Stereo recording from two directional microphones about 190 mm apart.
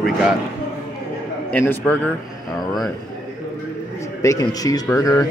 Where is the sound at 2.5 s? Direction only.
20° left (ahead or behind).